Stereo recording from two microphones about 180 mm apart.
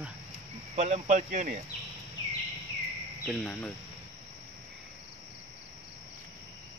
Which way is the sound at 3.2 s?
Centre (ahead or behind).